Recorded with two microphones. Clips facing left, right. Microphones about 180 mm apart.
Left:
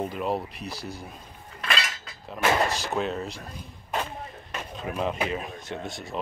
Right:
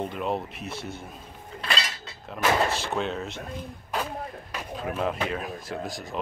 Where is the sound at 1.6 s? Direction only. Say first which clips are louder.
Left 1 dB; 30° right (ahead or behind).